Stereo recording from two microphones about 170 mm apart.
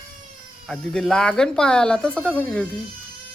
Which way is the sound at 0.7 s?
5° left (ahead or behind).